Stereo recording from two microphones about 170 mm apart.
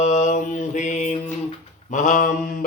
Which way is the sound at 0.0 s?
45° left (ahead or behind).